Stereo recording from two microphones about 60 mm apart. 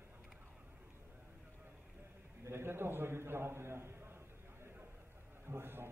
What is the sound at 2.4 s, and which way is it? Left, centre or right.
A man's voice, right.